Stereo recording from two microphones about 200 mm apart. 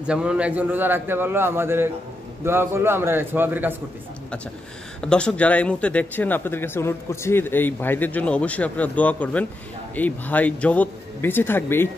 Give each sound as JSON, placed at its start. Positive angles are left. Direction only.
{"t": 0.0, "sound": "a man's voice", "side_deg": -5}
{"t": 5.0, "sound": "speech", "side_deg": 5}